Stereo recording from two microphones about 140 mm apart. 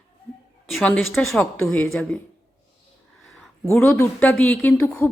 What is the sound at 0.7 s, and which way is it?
A woman's voice, 5° left (ahead or behind).